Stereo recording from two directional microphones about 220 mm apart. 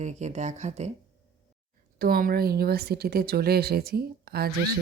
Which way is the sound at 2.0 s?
40° right (ahead or behind).